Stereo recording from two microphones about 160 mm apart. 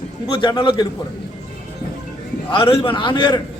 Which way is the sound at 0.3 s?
30° left (ahead or behind).